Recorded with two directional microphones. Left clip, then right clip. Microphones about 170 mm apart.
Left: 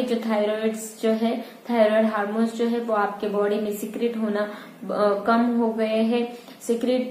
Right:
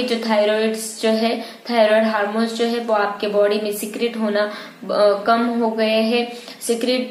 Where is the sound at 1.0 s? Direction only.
5° right (ahead or behind).